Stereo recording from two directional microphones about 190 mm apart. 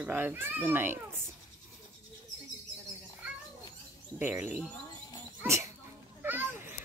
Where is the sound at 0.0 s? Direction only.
10° right (ahead or behind).